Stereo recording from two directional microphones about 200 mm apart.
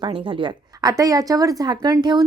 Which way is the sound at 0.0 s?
25° right (ahead or behind).